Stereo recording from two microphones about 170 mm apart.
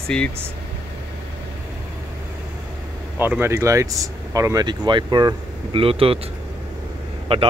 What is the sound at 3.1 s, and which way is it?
Speech, 10° right (ahead or behind).